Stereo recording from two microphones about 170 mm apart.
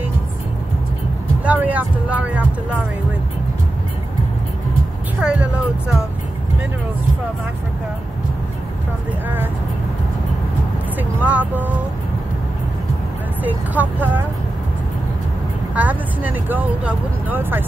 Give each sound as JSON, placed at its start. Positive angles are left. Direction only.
{"t": 1.4, "sound": "speech", "side_deg": -10}
{"t": 5.2, "sound": "speech", "side_deg": -5}
{"t": 11.0, "sound": "speech", "side_deg": -10}
{"t": 13.4, "sound": "speech", "side_deg": -10}
{"t": 15.7, "sound": "speech", "side_deg": -10}